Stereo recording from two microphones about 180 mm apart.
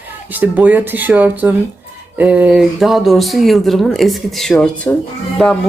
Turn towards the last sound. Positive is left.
turn(degrees=5)  # may be behind; listen again after turning